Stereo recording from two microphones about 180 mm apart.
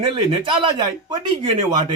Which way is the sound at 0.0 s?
25° right (ahead or behind).